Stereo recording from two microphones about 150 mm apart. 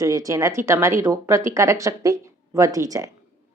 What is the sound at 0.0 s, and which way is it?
A woman's voice, 20° right (ahead or behind).